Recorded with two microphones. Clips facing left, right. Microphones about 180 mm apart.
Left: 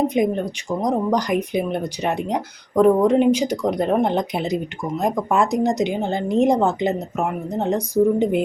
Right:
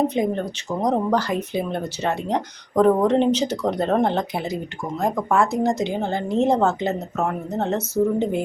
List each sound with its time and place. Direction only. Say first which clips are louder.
0.1 s speech: left 3 dB; 15° left (ahead or behind)